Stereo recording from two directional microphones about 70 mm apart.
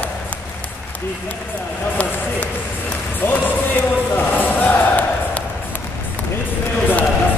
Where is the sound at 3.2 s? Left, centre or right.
Left.